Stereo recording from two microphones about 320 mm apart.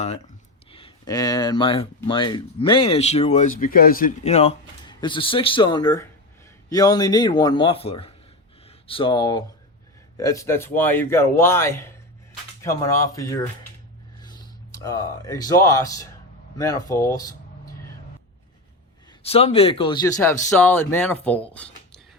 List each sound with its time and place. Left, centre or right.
0.7 s speech: centre
19.2 s speech: centre